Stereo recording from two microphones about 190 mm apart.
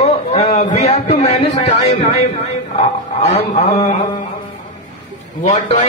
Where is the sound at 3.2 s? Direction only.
30° left (ahead or behind).